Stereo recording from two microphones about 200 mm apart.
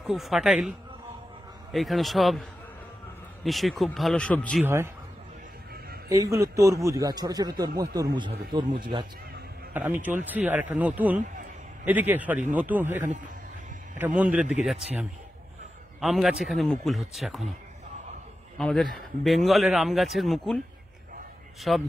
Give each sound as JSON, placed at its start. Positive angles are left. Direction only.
{"t": 0.0, "sound": "a man's voice", "side_deg": 0}
{"t": 3.4, "sound": "a man's voice", "side_deg": 0}
{"t": 4.6, "sound": "speech", "side_deg": -15}
{"t": 6.0, "sound": "speech", "side_deg": -15}
{"t": 9.8, "sound": "speech", "side_deg": -10}
{"t": 16.0, "sound": "a man's voice", "side_deg": 0}
{"t": 18.6, "sound": "a man's voice", "side_deg": 0}